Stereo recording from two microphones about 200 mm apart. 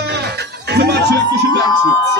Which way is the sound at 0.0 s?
55° right (ahead or behind).